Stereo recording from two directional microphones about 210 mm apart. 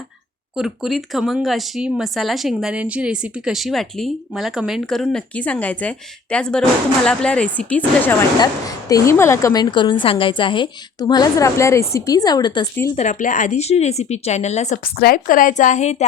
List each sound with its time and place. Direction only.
0.5 s a woman's voice: centre (ahead or behind); by 12.6 s 20° left (ahead or behind)
13.0 s speech: 35° left (ahead or behind)
14.9 s speech: 45° left (ahead or behind)